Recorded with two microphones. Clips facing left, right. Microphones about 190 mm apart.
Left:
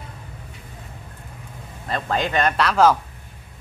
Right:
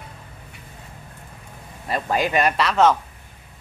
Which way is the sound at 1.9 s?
10° right (ahead or behind).